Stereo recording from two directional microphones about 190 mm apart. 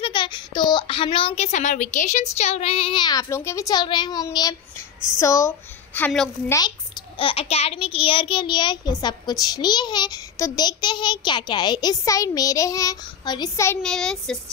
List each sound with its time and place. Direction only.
0.0 s a child's voice: 25° left (ahead or behind); by 6.3 s 5° left (ahead or behind)
7.2 s a child's voice: 30° left (ahead or behind)
13.8 s speech: 5° left (ahead or behind)